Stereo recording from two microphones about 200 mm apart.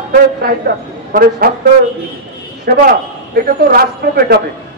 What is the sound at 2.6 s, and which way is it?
A man's voice, 50° right (ahead or behind).